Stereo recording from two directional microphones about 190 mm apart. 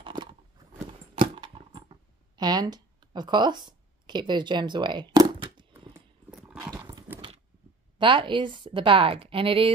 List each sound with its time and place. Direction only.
0.0 s a sound: 25° right (ahead or behind)
6.3 s dog: 5° right (ahead or behind)
6.6 s dog: 20° right (ahead or behind)
8.0 s a woman's voice: 25° right (ahead or behind)